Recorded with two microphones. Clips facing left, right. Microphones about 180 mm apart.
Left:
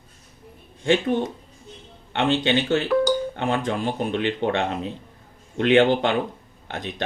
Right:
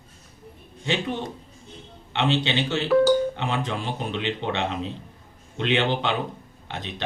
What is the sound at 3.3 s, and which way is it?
Speech, 50° left (ahead or behind).